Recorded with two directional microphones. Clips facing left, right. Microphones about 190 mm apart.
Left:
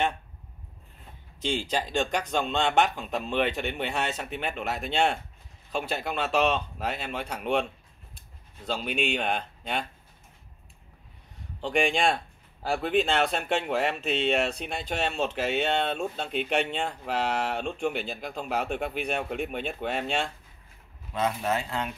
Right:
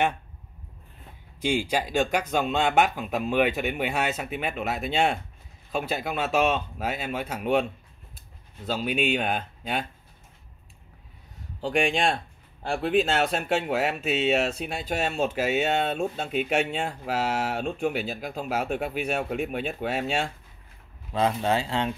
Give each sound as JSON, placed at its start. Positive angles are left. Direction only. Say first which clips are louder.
{"t": 1.4, "sound": "speech", "louder": "right 3 dB", "side_deg": -10}
{"t": 8.6, "sound": "speech", "louder": "right 3 dB", "side_deg": -5}
{"t": 11.6, "sound": "speech", "louder": "right 1 dB", "side_deg": 0}
{"t": 21.1, "sound": "speech", "louder": "right 4 dB", "side_deg": -30}